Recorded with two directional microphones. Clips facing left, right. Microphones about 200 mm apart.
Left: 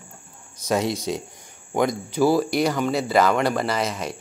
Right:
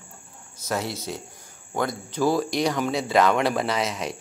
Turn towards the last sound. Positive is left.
turn(degrees=0)  # may be behind; listen again after turning